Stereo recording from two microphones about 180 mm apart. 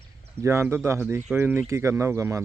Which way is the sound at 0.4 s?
15° right (ahead or behind).